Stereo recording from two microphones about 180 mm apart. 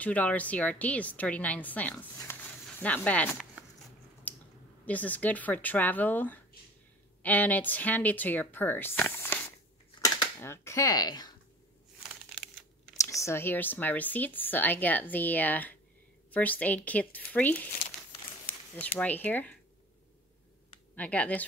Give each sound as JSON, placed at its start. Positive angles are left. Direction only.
{"t": 0.0, "sound": "speech", "side_deg": 10}
{"t": 2.3, "sound": "a sound", "side_deg": 15}
{"t": 2.8, "sound": "speech", "side_deg": 10}
{"t": 4.3, "sound": "a sound", "side_deg": 10}
{"t": 4.8, "sound": "speech", "side_deg": 10}
{"t": 12.0, "sound": "crumpling", "side_deg": -5}
{"t": 12.9, "sound": "speech", "side_deg": 15}
{"t": 18.8, "sound": "speech", "side_deg": 10}
{"t": 20.9, "sound": "speech", "side_deg": 10}